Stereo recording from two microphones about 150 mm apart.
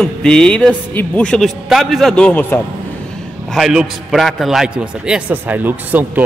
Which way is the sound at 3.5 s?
Centre (ahead or behind).